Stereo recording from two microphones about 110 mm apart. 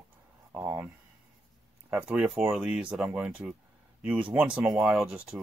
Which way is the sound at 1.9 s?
10° right (ahead or behind).